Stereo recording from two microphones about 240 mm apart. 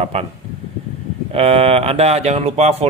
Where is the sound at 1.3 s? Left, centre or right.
Right.